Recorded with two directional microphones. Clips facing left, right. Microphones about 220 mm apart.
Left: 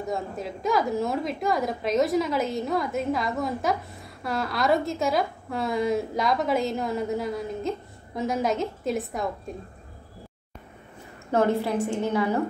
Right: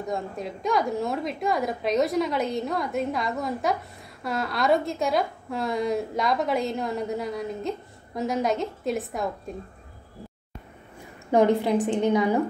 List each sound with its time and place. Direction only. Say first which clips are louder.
0.0 s a woman's voice: even; centre (ahead or behind)
11.3 s a woman's voice: right 3 dB; 15° right (ahead or behind)